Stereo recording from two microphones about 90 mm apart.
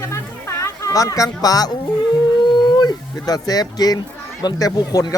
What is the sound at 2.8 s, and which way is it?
Speech, 45° left (ahead or behind).